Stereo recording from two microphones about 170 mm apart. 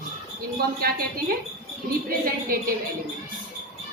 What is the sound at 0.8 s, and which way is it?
Speech, 60° right (ahead or behind).